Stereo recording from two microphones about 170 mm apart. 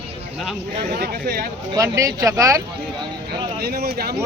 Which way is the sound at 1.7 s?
20° right (ahead or behind).